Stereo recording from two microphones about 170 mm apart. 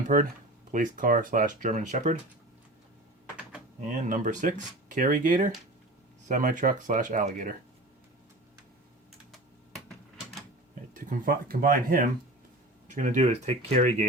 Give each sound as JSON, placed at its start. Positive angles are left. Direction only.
{"t": 0.1, "sound": "speech", "side_deg": -55}
{"t": 3.8, "sound": "speech", "side_deg": -45}
{"t": 10.9, "sound": "speech", "side_deg": -55}